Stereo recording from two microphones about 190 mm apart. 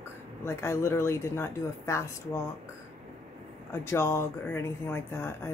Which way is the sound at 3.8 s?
15° left (ahead or behind).